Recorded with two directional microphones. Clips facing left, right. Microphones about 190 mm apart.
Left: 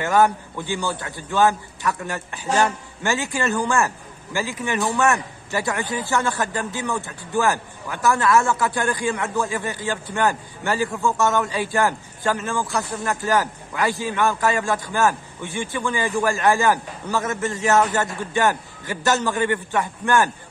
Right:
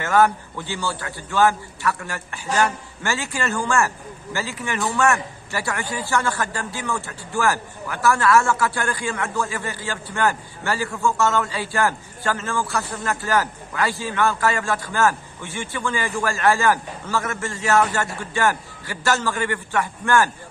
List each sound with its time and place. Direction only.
0.0 s a man's voice: 15° left (ahead or behind)